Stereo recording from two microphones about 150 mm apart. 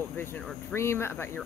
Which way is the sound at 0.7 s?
15° left (ahead or behind).